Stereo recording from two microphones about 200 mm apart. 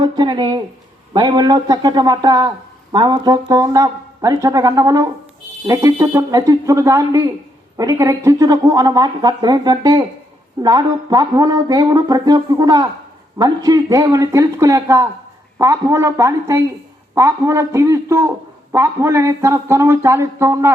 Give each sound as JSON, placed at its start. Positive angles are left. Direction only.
{"t": 0.0, "sound": "speech", "side_deg": -20}